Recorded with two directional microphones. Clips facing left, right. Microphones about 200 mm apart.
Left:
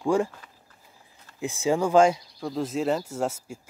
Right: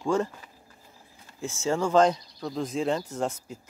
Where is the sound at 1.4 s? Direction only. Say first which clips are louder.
Left 3 dB; 15° left (ahead or behind).